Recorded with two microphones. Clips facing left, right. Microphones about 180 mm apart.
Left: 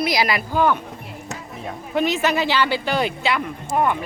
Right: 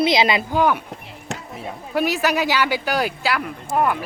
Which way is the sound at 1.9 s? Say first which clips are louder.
Even; 10° right (ahead or behind).